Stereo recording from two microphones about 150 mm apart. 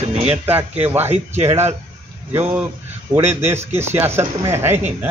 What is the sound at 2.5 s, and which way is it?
A man's voice, 10° right (ahead or behind).